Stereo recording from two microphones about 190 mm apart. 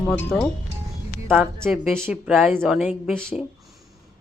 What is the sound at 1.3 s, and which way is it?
Speech, 10° right (ahead or behind).